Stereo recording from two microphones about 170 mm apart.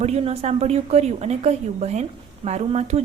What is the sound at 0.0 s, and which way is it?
A woman's voice, 40° right (ahead or behind).